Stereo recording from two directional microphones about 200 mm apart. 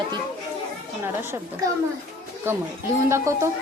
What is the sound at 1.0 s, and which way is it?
A woman's voice, 10° right (ahead or behind).